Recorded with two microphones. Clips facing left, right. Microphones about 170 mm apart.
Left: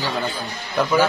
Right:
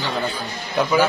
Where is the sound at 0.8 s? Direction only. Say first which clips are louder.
Even; 5° right (ahead or behind).